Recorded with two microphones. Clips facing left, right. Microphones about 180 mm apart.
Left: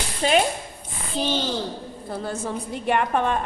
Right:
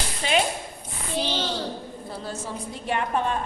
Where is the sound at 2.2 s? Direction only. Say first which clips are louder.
Left 5 dB; 60° left (ahead or behind).